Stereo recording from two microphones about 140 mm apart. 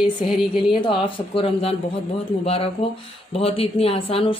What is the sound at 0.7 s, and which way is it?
A woman's voice, 35° left (ahead or behind).